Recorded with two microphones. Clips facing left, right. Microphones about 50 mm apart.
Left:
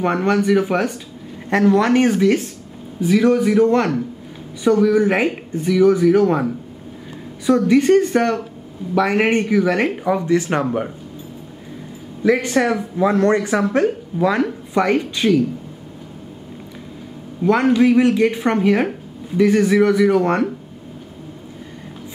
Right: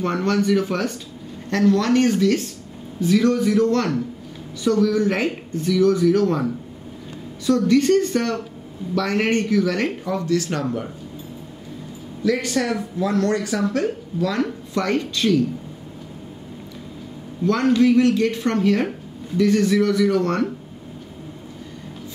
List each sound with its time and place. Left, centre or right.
0.0 s speech: centre
12.2 s speech: left
14.4 s speech: centre
17.5 s speech: centre